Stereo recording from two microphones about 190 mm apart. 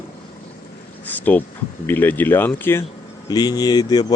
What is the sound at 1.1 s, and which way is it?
Speech, 10° left (ahead or behind).